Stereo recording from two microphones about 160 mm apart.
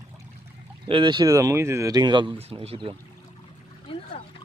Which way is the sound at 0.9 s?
30° right (ahead or behind).